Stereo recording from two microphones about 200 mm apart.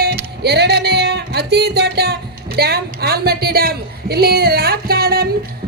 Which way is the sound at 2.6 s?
50° right (ahead or behind).